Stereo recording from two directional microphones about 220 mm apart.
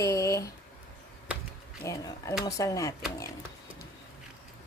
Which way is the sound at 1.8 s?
15° left (ahead or behind).